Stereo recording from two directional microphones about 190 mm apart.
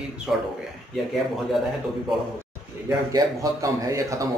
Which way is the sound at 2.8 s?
20° right (ahead or behind).